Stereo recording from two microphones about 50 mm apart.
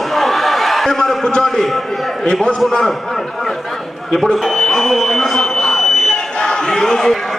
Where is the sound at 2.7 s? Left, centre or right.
Centre.